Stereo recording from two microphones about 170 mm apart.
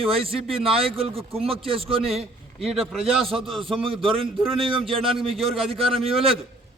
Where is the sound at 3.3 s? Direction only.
30° right (ahead or behind).